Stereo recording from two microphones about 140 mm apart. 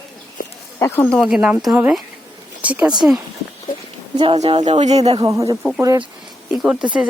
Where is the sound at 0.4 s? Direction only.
80° left.